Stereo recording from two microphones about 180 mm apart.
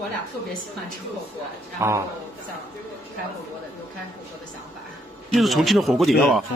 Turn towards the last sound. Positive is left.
turn(degrees=0)  # may be behind; listen again after turning